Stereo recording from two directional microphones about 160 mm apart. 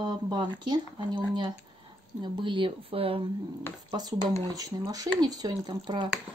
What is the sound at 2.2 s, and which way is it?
Speech, 30° right (ahead or behind).